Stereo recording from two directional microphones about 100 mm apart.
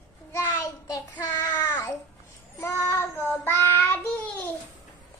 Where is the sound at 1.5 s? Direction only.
20° left (ahead or behind).